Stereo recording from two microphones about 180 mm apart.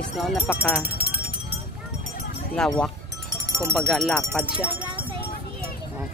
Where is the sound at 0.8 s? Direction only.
55° right (ahead or behind).